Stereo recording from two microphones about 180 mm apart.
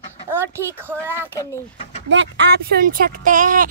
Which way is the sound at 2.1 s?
85° right.